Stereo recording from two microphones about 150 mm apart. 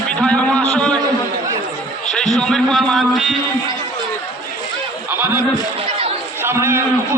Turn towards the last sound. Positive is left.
turn(degrees=-15)  # may be behind; listen again after turning